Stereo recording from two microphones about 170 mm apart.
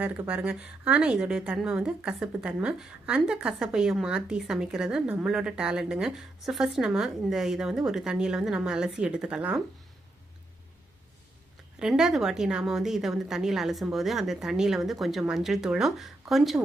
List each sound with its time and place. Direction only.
0.3 s a woman's voice: 10° right (ahead or behind)
11.8 s a woman's voice: 5° right (ahead or behind)